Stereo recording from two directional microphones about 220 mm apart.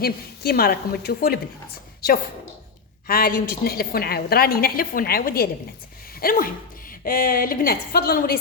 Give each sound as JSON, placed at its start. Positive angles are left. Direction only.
{"t": 0.0, "sound": "a woman's voice", "side_deg": 45}
{"t": 3.1, "sound": "a woman's voice", "side_deg": 40}